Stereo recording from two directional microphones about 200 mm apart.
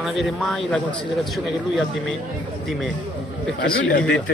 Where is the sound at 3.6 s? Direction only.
60° left (ahead or behind).